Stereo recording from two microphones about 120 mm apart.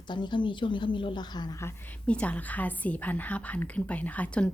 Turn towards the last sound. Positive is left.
turn(degrees=10)  # may be behind; listen again after turning